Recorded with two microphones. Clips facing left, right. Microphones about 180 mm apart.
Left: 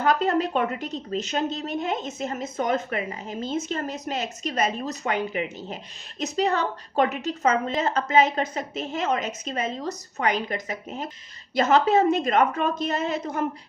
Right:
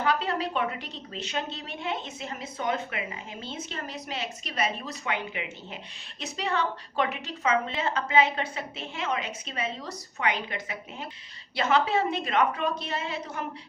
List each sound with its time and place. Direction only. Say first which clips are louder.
0.0 s a woman's voice: left 5 dB; 45° left (ahead or behind)